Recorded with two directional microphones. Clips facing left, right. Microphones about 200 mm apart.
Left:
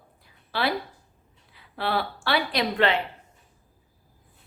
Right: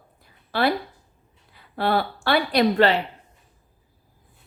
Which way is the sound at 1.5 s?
50° right (ahead or behind).